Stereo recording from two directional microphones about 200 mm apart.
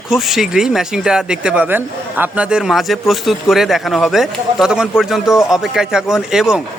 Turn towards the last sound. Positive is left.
turn(degrees=-5)  # may be behind; listen again after turning